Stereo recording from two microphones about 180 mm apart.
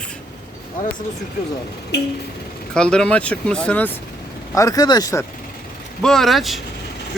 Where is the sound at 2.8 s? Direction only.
5° left (ahead or behind).